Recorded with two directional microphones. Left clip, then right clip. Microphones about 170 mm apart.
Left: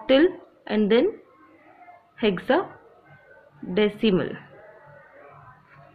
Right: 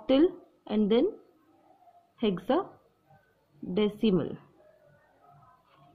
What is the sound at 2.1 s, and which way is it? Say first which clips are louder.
Speech: left 6 dB; 70° right (ahead or behind).